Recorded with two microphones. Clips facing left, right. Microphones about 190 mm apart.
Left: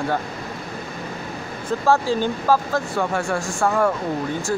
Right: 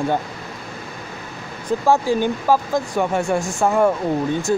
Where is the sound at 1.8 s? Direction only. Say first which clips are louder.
Right 2 dB; 15° right (ahead or behind).